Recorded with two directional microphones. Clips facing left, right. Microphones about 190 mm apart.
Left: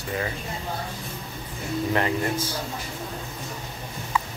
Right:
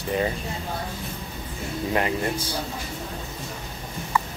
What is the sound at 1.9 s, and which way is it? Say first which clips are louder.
Speech: right 1 dB; 20° right (ahead or behind).